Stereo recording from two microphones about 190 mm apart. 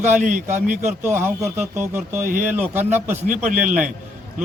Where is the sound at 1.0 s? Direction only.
15° right (ahead or behind).